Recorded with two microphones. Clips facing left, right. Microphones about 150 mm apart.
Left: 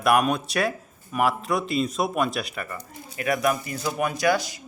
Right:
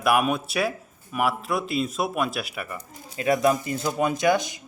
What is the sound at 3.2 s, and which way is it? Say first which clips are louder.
Speech: right 3 dB; 25° right (ahead or behind).